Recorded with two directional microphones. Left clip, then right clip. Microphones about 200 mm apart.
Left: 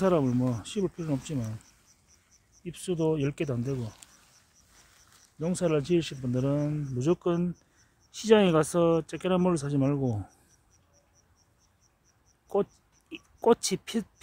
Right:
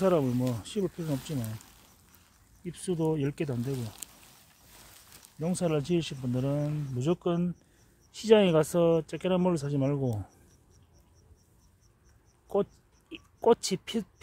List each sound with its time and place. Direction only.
0.0 s speech: centre (ahead or behind)
2.6 s speech: 10° left (ahead or behind)
4.0 s a sound: 60° right (ahead or behind)
5.4 s speech: centre (ahead or behind)
12.5 s speech: centre (ahead or behind)